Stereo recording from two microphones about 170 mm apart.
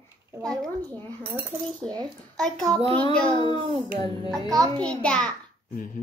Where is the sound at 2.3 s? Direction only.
5° left (ahead or behind).